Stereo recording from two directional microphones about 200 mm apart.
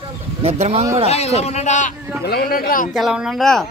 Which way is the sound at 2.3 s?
50° left (ahead or behind).